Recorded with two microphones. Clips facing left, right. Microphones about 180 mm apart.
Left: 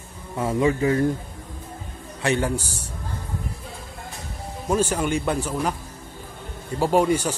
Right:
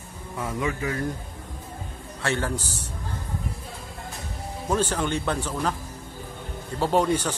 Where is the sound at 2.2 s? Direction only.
15° left (ahead or behind).